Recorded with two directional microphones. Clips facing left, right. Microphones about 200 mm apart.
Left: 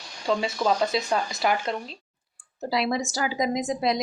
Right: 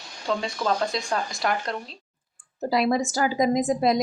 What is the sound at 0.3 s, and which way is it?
Speech, 5° left (ahead or behind).